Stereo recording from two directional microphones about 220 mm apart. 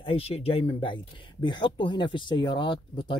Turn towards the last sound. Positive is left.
turn(degrees=20)  # may be behind; listen again after turning